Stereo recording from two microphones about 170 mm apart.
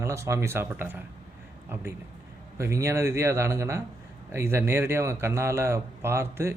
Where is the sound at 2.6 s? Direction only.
15° right (ahead or behind).